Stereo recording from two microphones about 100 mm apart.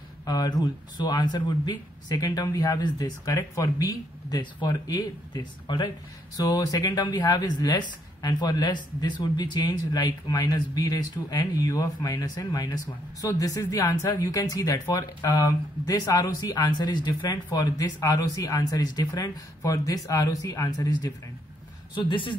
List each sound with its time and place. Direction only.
0.2 s speech: 40° left (ahead or behind)
21.9 s speech: 55° left (ahead or behind)